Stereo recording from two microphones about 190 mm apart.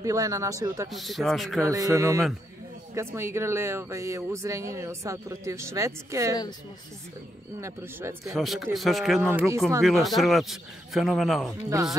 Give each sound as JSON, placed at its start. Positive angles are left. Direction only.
{"t": 0.0, "sound": "speech", "side_deg": -15}
{"t": 0.9, "sound": "a man's voice", "side_deg": 0}
{"t": 1.7, "sound": "speech", "side_deg": -15}
{"t": 7.6, "sound": "speech", "side_deg": -15}
{"t": 8.3, "sound": "a man's voice", "side_deg": 0}
{"t": 9.3, "sound": "speech", "side_deg": -10}
{"t": 9.8, "sound": "a man's voice", "side_deg": 0}
{"t": 11.7, "sound": "speech", "side_deg": -15}